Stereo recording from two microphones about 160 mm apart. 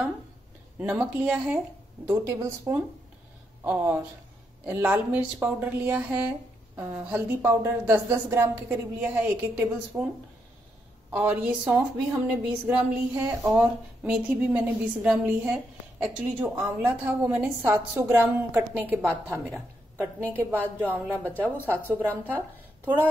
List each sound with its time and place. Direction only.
0.7 s speech: 10° right (ahead or behind)
11.1 s a woman's voice: 10° right (ahead or behind)